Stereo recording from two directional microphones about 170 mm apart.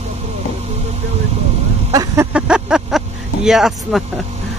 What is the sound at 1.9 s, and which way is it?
Speech, 20° right (ahead or behind).